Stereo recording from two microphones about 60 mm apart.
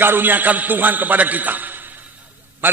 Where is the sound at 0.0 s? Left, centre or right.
Right.